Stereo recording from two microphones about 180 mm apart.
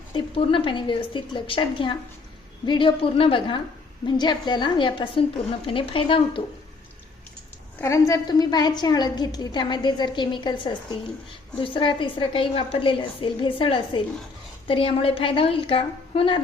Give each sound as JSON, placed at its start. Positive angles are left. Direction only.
{"t": 0.1, "sound": "a woman's voice", "side_deg": 30}
{"t": 7.8, "sound": "a woman's voice", "side_deg": 15}